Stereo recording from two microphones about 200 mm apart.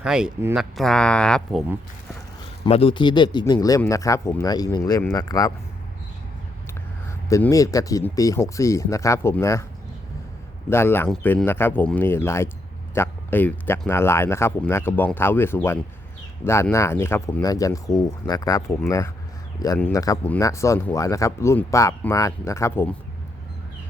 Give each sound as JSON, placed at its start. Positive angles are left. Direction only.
{"t": 0.0, "sound": "speech", "side_deg": -5}
{"t": 2.6, "sound": "speech", "side_deg": 30}
{"t": 7.3, "sound": "speech", "side_deg": 15}
{"t": 10.7, "sound": "speech", "side_deg": 10}